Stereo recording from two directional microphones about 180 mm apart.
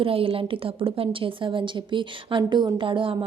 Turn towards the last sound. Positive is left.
turn(degrees=-30)  # may be behind; listen again after turning